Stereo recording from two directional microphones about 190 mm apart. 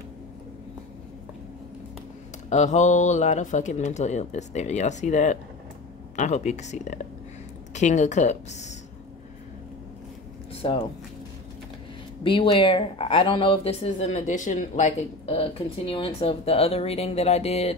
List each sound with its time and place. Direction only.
2.5 s speech: 40° left (ahead or behind)
10.5 s a sound: 30° left (ahead or behind)
12.2 s speech: 25° left (ahead or behind)